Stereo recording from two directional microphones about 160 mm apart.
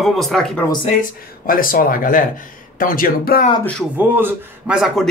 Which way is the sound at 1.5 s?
60° left (ahead or behind).